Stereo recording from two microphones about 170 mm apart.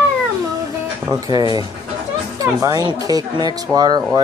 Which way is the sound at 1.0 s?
20° right (ahead or behind).